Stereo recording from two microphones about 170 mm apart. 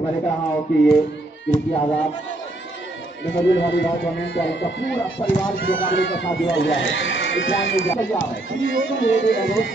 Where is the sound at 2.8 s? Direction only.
90° left.